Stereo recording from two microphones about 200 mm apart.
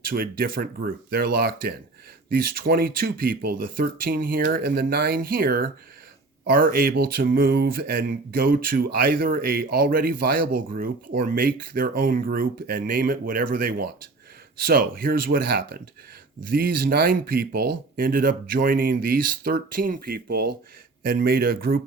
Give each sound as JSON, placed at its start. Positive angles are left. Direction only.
{"t": 0.0, "sound": "speech", "side_deg": -45}